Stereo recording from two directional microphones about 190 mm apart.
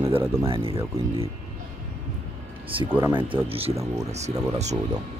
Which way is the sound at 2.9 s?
15° right (ahead or behind).